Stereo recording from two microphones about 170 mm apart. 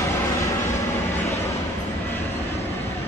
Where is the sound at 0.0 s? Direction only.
15° left (ahead or behind).